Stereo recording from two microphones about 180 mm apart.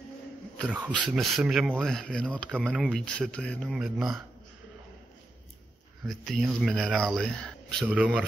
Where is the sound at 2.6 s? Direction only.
5° right (ahead or behind).